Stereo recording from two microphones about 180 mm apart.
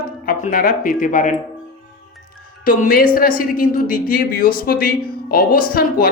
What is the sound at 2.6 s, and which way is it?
Speech, 55° left (ahead or behind).